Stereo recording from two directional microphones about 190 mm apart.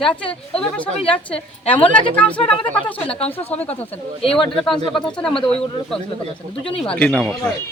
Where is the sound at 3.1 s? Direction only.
30° left (ahead or behind).